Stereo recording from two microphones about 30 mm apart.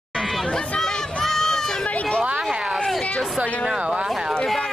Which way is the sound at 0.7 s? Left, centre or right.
Centre.